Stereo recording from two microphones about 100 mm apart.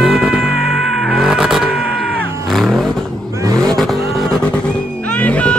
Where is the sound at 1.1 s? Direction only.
5° right (ahead or behind).